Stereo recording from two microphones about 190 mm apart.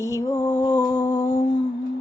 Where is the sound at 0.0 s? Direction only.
15° left (ahead or behind).